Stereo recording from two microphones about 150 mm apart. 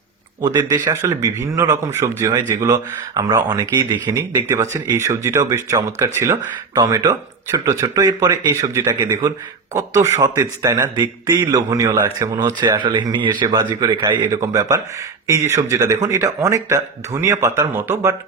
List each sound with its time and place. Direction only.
0.4 s a man's voice: 25° right (ahead or behind)